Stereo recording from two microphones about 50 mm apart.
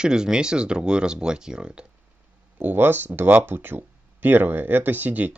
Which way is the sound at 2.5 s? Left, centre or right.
Right.